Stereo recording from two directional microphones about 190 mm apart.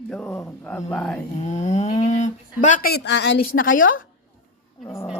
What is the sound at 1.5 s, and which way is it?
Speech, 35° left (ahead or behind).